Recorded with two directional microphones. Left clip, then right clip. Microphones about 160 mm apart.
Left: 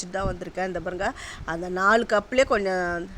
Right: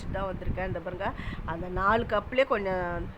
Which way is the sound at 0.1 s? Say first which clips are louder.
Left 3 dB; 35° left (ahead or behind).